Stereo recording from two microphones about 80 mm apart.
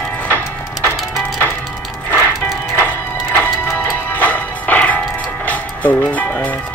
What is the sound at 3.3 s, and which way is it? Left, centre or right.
Music, left.